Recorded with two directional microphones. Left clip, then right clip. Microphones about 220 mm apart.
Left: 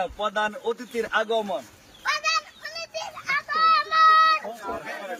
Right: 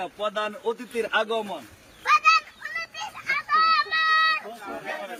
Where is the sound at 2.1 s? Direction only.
10° left (ahead or behind).